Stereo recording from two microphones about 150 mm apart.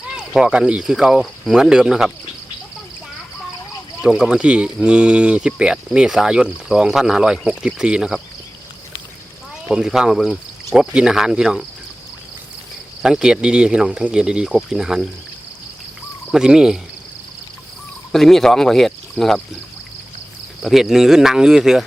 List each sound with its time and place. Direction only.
0.2 s speech: 5° right (ahead or behind)
4.0 s speech: 5° right (ahead or behind)
9.6 s speech: 5° right (ahead or behind)
13.0 s speech: 5° right (ahead or behind)
16.3 s speech: 5° right (ahead or behind)
18.1 s speech: centre (ahead or behind)
20.6 s speech: centre (ahead or behind)